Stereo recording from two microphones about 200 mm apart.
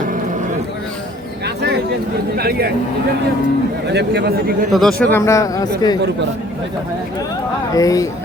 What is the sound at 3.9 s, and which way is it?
Speech, 55° right (ahead or behind).